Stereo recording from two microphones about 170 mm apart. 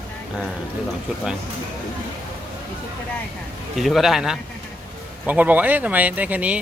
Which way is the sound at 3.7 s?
Centre (ahead or behind).